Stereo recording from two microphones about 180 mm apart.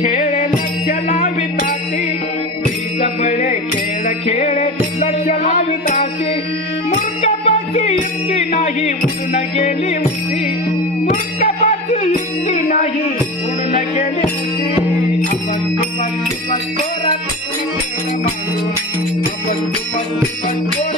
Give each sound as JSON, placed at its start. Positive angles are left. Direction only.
{"t": 0.0, "sound": "music", "side_deg": 40}
{"t": 3.0, "sound": "music", "side_deg": 40}
{"t": 11.1, "sound": "music", "side_deg": 40}